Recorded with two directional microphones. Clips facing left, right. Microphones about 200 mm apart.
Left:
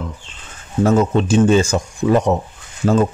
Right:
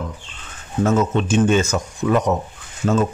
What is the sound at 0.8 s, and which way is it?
A man's voice, 35° left (ahead or behind).